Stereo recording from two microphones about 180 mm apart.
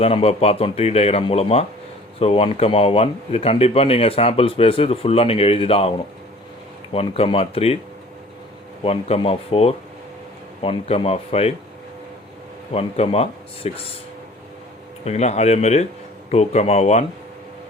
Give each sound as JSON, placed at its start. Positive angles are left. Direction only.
{"t": 0.0, "sound": "speech", "side_deg": 35}
{"t": 6.9, "sound": "speech", "side_deg": 35}
{"t": 8.8, "sound": "speech", "side_deg": 35}
{"t": 12.7, "sound": "speech", "side_deg": 35}
{"t": 15.0, "sound": "speech", "side_deg": 35}